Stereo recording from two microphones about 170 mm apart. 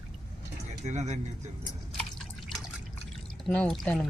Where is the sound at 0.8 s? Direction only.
40° right (ahead or behind).